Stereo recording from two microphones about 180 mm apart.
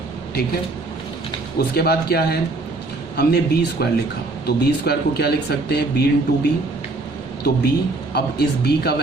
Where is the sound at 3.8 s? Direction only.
60° left (ahead or behind).